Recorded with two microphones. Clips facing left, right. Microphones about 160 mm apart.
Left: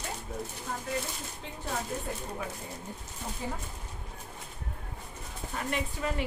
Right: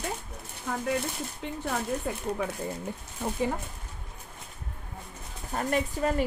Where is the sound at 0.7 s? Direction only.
65° right (ahead or behind).